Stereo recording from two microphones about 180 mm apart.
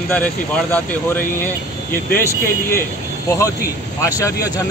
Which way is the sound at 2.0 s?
55° left (ahead or behind).